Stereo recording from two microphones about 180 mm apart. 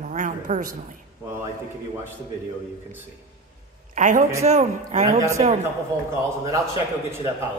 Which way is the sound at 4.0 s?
45° right (ahead or behind).